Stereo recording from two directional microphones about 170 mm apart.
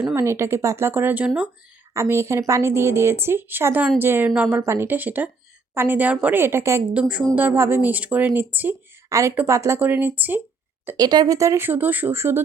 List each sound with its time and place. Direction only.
0.0 s speech: 15° right (ahead or behind)
10.8 s speech: 20° right (ahead or behind)